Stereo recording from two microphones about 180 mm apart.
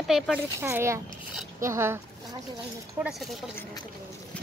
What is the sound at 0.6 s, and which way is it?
Speech, 15° right (ahead or behind).